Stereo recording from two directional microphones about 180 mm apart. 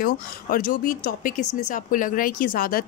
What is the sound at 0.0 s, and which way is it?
Speech, 50° left (ahead or behind).